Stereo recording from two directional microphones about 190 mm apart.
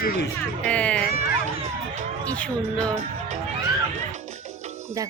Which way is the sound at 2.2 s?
5° left (ahead or behind).